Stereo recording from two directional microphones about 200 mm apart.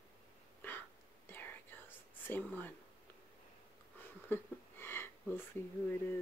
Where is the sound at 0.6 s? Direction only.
10° left (ahead or behind).